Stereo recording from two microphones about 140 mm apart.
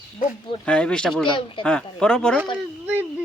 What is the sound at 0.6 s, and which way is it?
Speech, 10° left (ahead or behind).